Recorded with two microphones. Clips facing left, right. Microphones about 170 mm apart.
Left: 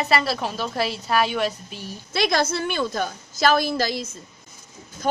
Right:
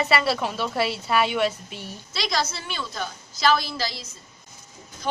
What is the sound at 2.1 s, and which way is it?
A woman's voice, 55° left (ahead or behind).